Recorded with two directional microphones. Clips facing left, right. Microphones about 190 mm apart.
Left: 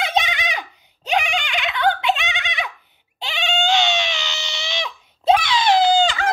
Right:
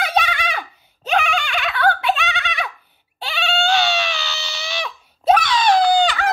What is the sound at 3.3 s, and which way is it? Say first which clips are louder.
Cat: right 1 dB; 20° left (ahead or behind).